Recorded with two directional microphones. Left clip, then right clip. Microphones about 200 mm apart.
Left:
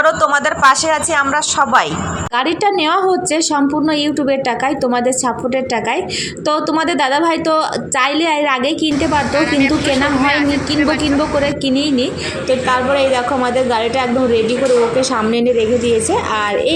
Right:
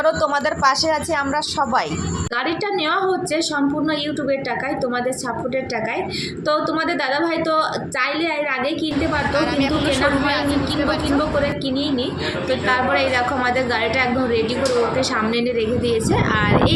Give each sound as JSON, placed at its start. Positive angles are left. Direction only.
{"t": 0.0, "sound": "speech", "side_deg": 10}
{"t": 2.6, "sound": "a woman's voice", "side_deg": 40}
{"t": 6.5, "sound": "a woman's voice", "side_deg": 40}
{"t": 9.4, "sound": "speech", "side_deg": -20}
{"t": 12.5, "sound": "a woman's voice", "side_deg": 20}